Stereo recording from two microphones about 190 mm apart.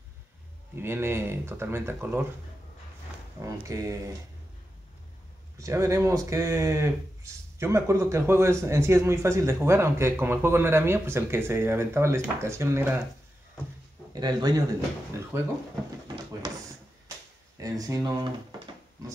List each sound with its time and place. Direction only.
0.7 s speech: 10° right (ahead or behind)
3.3 s speech: 15° right (ahead or behind)
5.6 s speech: 15° right (ahead or behind)
14.1 s speech: 20° right (ahead or behind)